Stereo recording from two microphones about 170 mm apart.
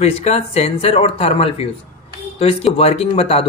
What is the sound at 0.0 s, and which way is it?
Speech, 40° left (ahead or behind).